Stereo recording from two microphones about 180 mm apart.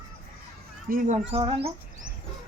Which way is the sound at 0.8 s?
50° right (ahead or behind).